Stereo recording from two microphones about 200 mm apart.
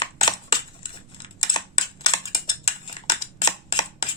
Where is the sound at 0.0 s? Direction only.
30° left (ahead or behind).